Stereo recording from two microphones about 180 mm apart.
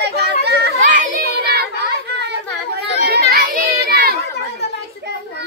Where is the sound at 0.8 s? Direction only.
45° right (ahead or behind).